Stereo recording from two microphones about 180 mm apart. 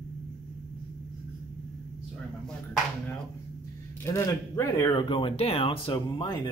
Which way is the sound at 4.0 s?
15° left (ahead or behind).